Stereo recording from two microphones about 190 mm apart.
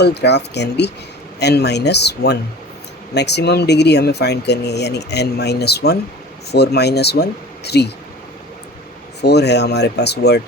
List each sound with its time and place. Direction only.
0.0 s speech: 60° left (ahead or behind)
9.2 s speech: 60° left (ahead or behind)